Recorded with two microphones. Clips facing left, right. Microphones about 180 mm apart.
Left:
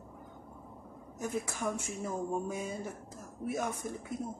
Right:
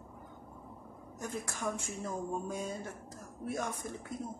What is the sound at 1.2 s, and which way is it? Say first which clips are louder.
Speech: left 3 dB; 10° left (ahead or behind).